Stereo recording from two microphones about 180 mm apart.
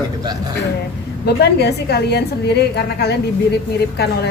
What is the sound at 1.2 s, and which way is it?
A woman's voice, 65° left (ahead or behind).